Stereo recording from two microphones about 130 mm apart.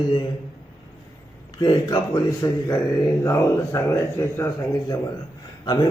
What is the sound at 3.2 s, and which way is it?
Speech, 20° left (ahead or behind).